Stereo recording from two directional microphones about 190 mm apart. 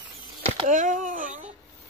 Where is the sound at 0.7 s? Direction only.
45° right (ahead or behind).